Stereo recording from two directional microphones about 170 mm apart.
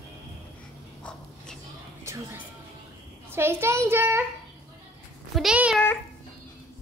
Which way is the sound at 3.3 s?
15° right (ahead or behind).